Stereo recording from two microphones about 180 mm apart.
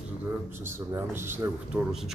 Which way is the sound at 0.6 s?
15° right (ahead or behind).